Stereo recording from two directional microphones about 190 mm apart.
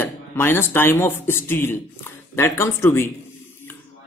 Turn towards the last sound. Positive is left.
turn(degrees=15)  # may be behind; listen again after turning